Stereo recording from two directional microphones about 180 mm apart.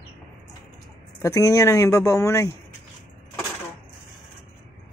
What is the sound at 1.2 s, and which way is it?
Speech, 20° left (ahead or behind).